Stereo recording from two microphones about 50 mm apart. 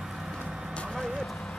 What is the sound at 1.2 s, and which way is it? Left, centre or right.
Run, centre.